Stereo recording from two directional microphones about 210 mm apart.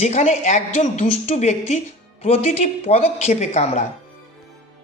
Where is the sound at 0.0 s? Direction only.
35° left (ahead or behind).